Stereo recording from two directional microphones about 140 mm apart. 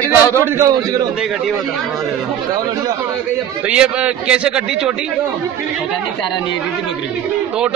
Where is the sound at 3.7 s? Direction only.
10° right (ahead or behind).